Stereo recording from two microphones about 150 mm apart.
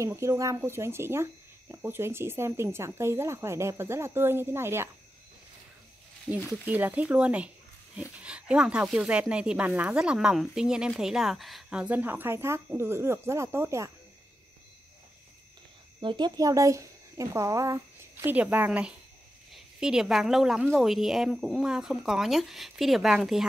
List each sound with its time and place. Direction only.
0.0 s speech: 20° right (ahead or behind)
6.4 s speech: 15° right (ahead or behind)
16.0 s speech: 30° right (ahead or behind); by 23.4 s 5° right (ahead or behind)